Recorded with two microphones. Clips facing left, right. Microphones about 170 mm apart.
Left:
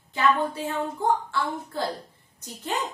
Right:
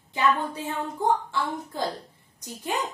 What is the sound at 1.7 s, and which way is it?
Speech, 15° right (ahead or behind).